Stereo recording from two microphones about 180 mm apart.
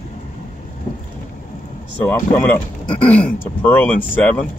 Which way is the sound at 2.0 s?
10° left (ahead or behind).